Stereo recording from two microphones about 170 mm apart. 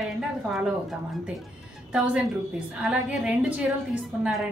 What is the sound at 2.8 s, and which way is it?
A woman's voice, 5° right (ahead or behind).